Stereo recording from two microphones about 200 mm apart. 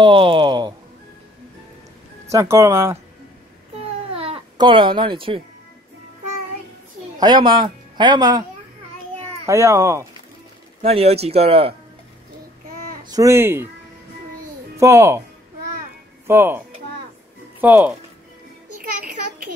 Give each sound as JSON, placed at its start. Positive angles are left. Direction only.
{"t": 0.0, "sound": "speech", "side_deg": -25}
{"t": 2.3, "sound": "speech", "side_deg": -15}
{"t": 3.7, "sound": "babbling", "side_deg": -30}
{"t": 7.2, "sound": "speech", "side_deg": -20}
{"t": 9.5, "sound": "speech", "side_deg": -15}
{"t": 10.8, "sound": "speech", "side_deg": -30}
{"t": 13.1, "sound": "speech", "side_deg": -15}
{"t": 14.8, "sound": "speech", "side_deg": -15}
{"t": 16.3, "sound": "speech", "side_deg": -10}